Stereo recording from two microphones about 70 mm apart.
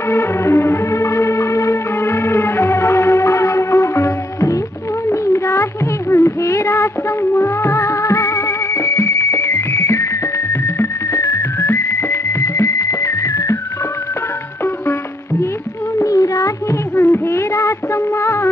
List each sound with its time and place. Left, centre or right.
0.1 s music: left
16.0 s music: left
16.9 s music: left